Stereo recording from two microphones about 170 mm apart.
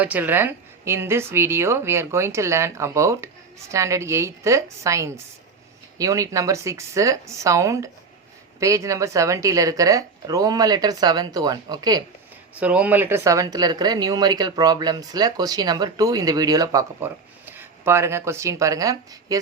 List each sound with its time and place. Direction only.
0.0 s a woman's voice: 10° right (ahead or behind)
12.5 s speech: 10° right (ahead or behind)